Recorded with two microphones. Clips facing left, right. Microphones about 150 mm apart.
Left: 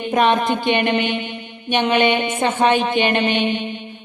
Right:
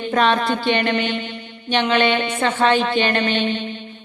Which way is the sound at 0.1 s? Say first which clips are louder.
Left 1 dB; 15° left (ahead or behind).